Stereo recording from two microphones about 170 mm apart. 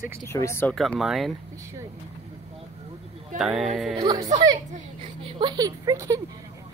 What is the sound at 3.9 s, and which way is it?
Speech, 25° right (ahead or behind).